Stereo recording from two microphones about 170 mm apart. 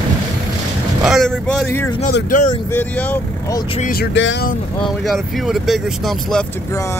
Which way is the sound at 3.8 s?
60° left (ahead or behind).